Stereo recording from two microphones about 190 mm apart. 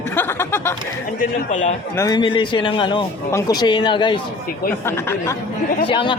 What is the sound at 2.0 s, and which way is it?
Speech, 20° left (ahead or behind).